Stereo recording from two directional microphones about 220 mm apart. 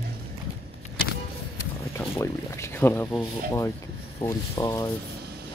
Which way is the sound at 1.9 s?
10° left (ahead or behind).